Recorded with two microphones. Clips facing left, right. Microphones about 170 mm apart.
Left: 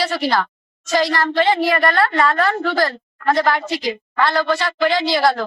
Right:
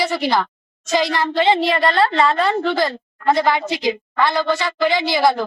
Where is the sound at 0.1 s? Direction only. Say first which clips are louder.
Even; 15° right (ahead or behind).